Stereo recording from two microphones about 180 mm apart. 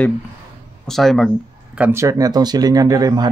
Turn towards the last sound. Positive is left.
turn(degrees=-20)  # may be behind; listen again after turning